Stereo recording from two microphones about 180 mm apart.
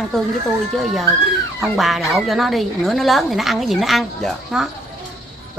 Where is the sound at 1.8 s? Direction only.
Centre (ahead or behind).